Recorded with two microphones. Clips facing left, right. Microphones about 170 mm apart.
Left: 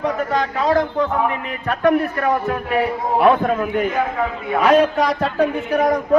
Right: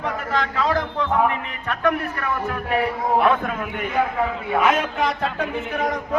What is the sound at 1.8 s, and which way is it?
A man's voice, 35° left (ahead or behind).